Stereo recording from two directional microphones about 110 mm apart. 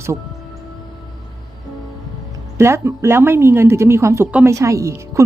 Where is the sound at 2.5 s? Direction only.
25° right (ahead or behind).